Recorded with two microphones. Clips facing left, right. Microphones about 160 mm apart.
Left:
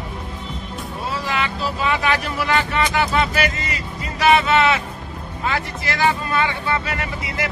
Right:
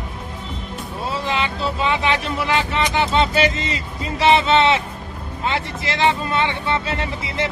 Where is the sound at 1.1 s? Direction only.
25° right (ahead or behind).